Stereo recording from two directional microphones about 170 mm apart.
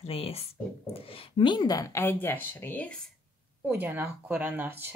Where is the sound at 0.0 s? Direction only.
35° left (ahead or behind); by 3.1 s 10° left (ahead or behind).